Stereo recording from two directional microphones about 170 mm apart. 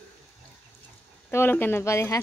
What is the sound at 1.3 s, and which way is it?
Speech, 10° left (ahead or behind).